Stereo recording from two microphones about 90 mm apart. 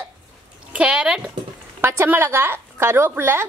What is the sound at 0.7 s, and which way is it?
Speech, 10° right (ahead or behind).